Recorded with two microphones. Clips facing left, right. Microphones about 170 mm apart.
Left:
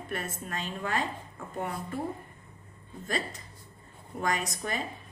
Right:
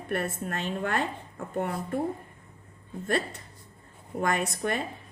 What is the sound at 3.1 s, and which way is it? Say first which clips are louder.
A woman's voice: right 5 dB; 60° right (ahead or behind).